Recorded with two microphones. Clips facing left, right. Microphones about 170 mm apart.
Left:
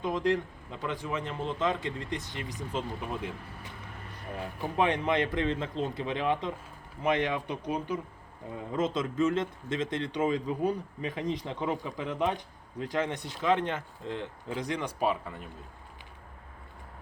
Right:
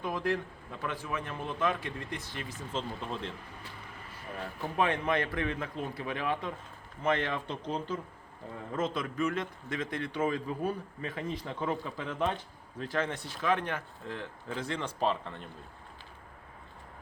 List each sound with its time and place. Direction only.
0.0 s a man's voice: 20° left (ahead or behind)